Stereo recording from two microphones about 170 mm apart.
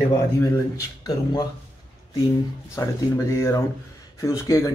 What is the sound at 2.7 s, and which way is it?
Speech, 15° left (ahead or behind).